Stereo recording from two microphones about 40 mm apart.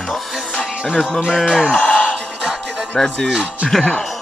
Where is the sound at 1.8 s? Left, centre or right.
Left.